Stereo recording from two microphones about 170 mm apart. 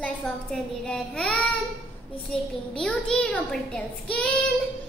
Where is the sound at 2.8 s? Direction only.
5° left (ahead or behind).